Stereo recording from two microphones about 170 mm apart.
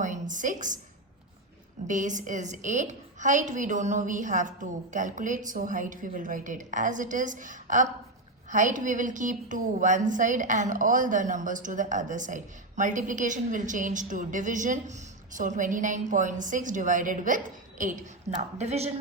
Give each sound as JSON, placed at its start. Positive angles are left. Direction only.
{"t": 0.0, "sound": "a woman's voice", "side_deg": -45}
{"t": 1.9, "sound": "a woman's voice", "side_deg": -45}